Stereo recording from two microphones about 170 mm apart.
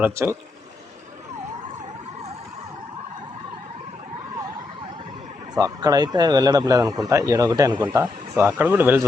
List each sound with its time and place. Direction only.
0.0 s speech: 15° right (ahead or behind)
5.5 s speech: 20° right (ahead or behind)